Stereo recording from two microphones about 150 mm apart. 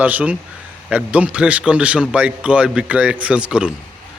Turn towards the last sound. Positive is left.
turn(degrees=-5)  # may be behind; listen again after turning